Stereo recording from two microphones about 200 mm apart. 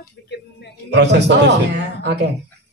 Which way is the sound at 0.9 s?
60° right (ahead or behind).